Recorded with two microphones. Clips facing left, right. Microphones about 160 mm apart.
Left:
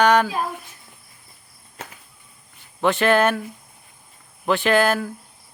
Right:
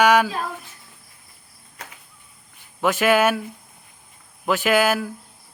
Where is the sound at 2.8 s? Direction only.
5° right (ahead or behind).